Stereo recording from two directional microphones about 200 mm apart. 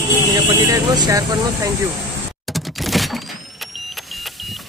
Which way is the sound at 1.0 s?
15° right (ahead or behind).